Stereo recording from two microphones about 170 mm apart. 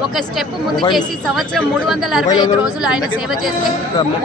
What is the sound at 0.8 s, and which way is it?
Speech, 25° left (ahead or behind).